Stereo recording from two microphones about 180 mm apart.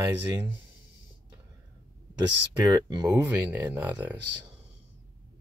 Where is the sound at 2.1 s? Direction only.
20° right (ahead or behind).